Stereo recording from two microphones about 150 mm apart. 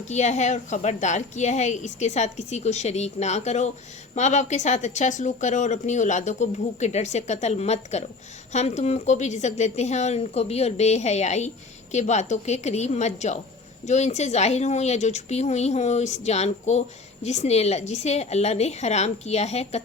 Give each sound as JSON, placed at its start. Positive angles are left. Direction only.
{"t": 0.1, "sound": "a woman's voice", "side_deg": 50}